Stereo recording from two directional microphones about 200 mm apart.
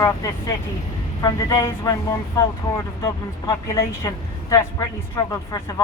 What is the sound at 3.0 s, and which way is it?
Speech, 15° left (ahead or behind).